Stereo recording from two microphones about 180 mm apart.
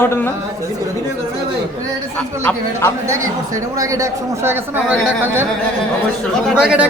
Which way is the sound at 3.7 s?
20° right (ahead or behind).